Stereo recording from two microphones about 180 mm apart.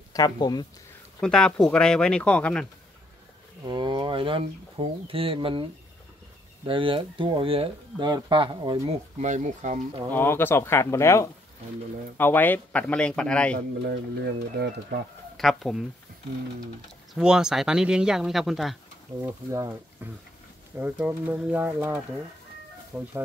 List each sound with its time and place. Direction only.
0.1 s speech: 20° left (ahead or behind)
1.2 s speech: 5° left (ahead or behind)
3.6 s speech: 25° right (ahead or behind)
9.2 s speech: 40° right (ahead or behind)
10.1 s speech: 10° left (ahead or behind)
13.8 s speech: 65° right (ahead or behind)
15.3 s speech: centre (ahead or behind)
17.1 s speech: 5° right (ahead or behind)
19.2 s speech: 15° right (ahead or behind)